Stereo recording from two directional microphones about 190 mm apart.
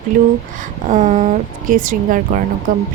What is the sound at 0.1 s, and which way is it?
A woman's voice, 45° right (ahead or behind).